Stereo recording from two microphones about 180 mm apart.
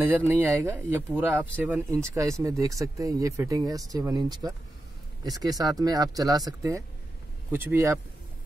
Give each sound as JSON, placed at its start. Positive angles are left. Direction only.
{"t": 0.0, "sound": "speech", "side_deg": -10}
{"t": 5.6, "sound": "speech", "side_deg": -20}